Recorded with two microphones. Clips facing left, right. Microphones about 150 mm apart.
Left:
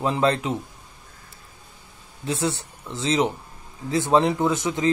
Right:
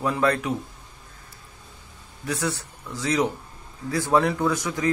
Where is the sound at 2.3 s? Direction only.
25° left (ahead or behind).